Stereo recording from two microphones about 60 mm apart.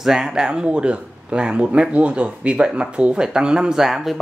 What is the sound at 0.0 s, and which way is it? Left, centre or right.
Speech, centre.